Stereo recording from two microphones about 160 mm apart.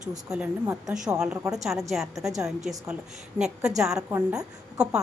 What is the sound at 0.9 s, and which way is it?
A woman's voice, 5° right (ahead or behind).